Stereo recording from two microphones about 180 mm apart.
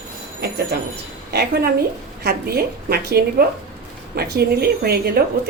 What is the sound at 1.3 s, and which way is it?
A woman's voice, 65° right (ahead or behind).